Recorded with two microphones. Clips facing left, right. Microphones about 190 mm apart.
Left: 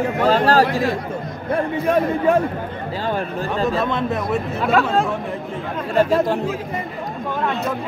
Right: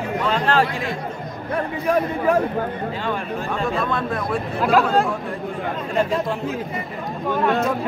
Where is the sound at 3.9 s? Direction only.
20° left (ahead or behind).